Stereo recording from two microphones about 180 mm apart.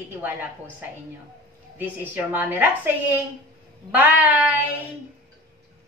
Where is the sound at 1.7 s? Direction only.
10° right (ahead or behind).